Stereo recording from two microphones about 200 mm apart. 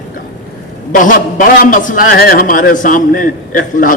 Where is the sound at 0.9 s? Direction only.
40° left (ahead or behind).